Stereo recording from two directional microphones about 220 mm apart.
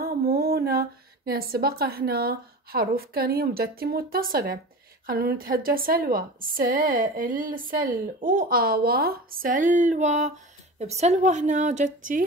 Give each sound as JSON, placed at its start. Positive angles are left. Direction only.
{"t": 0.0, "sound": "a woman's voice", "side_deg": -45}